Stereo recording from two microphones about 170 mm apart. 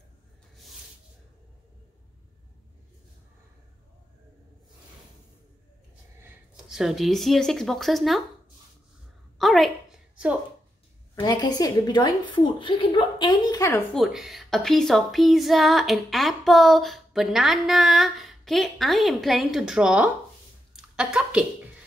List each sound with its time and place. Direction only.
6.2 s speech: 5° right (ahead or behind)
9.4 s a sound: centre (ahead or behind)
11.1 s a woman's voice: 25° left (ahead or behind)
13.9 s speech: centre (ahead or behind)